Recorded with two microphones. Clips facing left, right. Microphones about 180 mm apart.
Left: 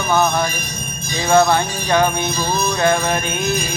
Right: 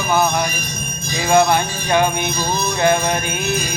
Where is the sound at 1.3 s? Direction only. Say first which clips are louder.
Left 1 dB; 15° right (ahead or behind).